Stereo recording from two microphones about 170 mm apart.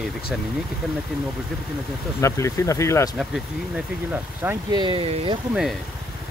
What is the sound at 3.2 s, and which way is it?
Speech, 5° right (ahead or behind).